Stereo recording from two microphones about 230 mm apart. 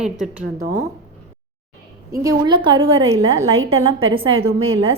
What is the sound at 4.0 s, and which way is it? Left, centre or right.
Speech, right.